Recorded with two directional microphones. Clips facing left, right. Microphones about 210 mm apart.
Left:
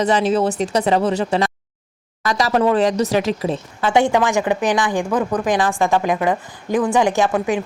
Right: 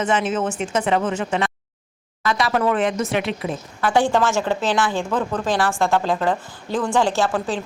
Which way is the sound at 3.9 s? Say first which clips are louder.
Left 2 dB; 20° left (ahead or behind).